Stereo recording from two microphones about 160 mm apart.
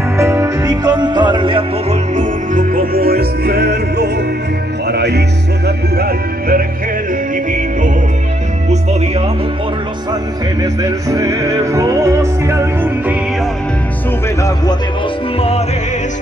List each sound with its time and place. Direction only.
0.2 s music: 20° right (ahead or behind)
2.1 s music: 55° right (ahead or behind); by 5.2 s 90° right
5.9 s music: 70° right (ahead or behind)
10.6 s music: 20° right (ahead or behind)